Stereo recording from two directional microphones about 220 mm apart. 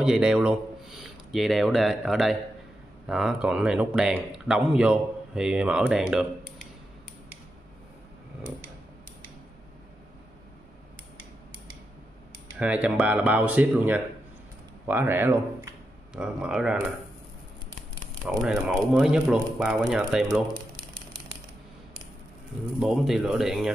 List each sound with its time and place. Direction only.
0.0 s speech: 5° right (ahead or behind)
12.5 s speech: 5° right (ahead or behind)
18.4 s speech: centre (ahead or behind)
22.8 s speech: centre (ahead or behind)